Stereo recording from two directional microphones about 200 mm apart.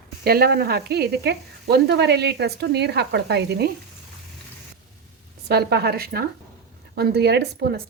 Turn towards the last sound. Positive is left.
turn(degrees=-55)  # may be behind; listen again after turning